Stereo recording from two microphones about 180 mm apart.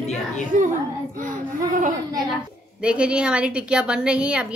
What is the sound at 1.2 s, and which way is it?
Speech, 45° right (ahead or behind).